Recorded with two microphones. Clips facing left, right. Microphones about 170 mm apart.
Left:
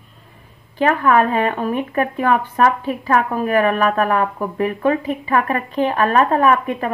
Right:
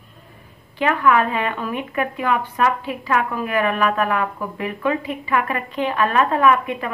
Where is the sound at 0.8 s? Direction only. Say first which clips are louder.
Left 3 dB; 40° left (ahead or behind).